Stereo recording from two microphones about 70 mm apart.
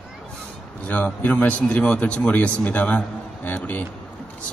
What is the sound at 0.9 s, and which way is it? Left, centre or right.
A man's voice, left.